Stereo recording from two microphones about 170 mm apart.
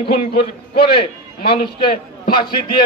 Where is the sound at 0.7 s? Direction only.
65° left (ahead or behind).